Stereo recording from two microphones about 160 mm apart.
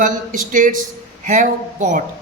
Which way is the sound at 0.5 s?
55° right (ahead or behind).